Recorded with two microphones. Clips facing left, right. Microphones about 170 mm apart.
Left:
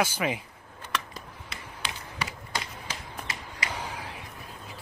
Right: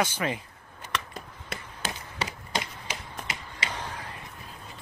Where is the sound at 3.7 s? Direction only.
10° left (ahead or behind).